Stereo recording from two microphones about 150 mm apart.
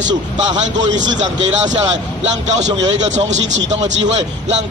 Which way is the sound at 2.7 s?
25° right (ahead or behind).